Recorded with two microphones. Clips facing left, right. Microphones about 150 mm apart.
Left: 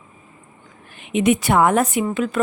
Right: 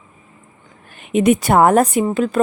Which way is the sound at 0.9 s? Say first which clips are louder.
Right 3 dB; 45° right (ahead or behind).